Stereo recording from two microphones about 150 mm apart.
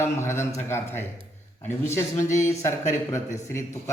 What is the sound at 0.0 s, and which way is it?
A man's voice, 20° left (ahead or behind).